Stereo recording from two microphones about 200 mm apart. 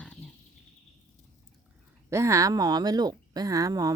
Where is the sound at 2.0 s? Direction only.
15° right (ahead or behind).